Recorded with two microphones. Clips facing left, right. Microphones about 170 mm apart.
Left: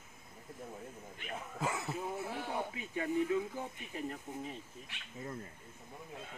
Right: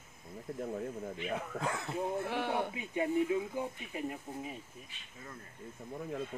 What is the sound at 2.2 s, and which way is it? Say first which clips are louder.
Speech: right 5 dB; 75° right (ahead or behind).